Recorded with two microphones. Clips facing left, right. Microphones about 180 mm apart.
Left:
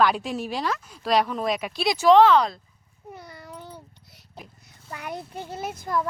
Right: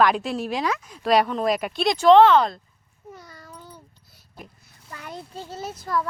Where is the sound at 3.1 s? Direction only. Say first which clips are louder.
Left 3 dB; 20° left (ahead or behind).